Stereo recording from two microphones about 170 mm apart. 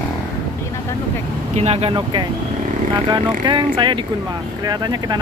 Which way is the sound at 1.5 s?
35° right (ahead or behind).